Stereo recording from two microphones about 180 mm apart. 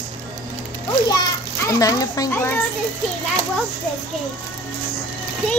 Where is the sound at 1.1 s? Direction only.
20° left (ahead or behind).